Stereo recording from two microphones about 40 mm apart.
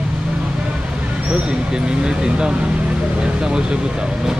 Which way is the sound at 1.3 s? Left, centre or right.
Right.